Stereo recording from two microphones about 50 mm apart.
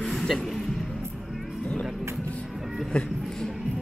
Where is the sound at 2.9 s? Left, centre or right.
Left.